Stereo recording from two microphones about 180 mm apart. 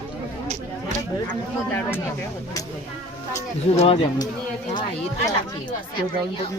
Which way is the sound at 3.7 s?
30° left (ahead or behind).